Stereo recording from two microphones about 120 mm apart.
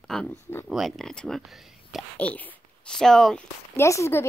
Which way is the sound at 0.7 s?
Centre (ahead or behind).